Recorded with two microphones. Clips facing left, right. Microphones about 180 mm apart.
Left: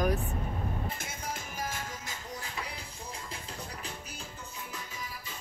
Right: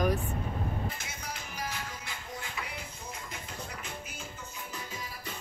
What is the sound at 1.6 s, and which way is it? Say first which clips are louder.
Music: left 1 dB; 45° left (ahead or behind).